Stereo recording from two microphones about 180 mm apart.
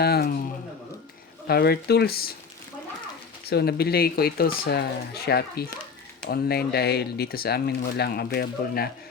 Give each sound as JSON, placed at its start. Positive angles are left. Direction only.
{"t": 0.0, "sound": "a sound", "side_deg": 60}
{"t": 1.5, "sound": "speech", "side_deg": 60}
{"t": 3.5, "sound": "speech", "side_deg": 65}